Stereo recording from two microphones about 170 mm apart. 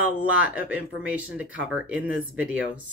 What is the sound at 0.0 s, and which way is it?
Speech, 10° right (ahead or behind).